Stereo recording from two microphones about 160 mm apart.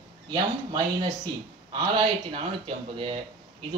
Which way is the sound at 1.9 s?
35° right (ahead or behind).